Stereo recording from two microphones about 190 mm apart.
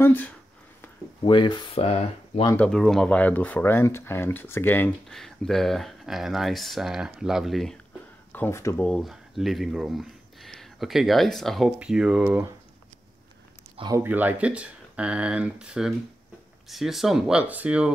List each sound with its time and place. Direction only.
0.0 s speech: 10° left (ahead or behind)
1.2 s speech: 25° left (ahead or behind)
2.6 s speech: centre (ahead or behind)
8.3 s speech: 10° left (ahead or behind)
8.8 s speech: centre (ahead or behind)
13.7 s speech: 20° right (ahead or behind)
14.0 s speech: 10° right (ahead or behind)